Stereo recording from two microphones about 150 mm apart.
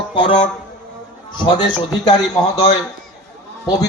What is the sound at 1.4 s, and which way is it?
Speech, 30° left (ahead or behind).